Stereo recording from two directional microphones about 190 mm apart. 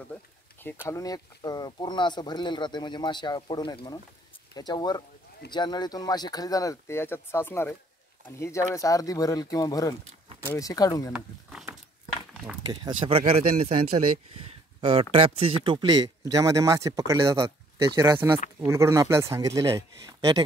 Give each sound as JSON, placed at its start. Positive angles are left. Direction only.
{"t": 0.8, "sound": "speech", "side_deg": 20}
{"t": 12.6, "sound": "speech", "side_deg": -25}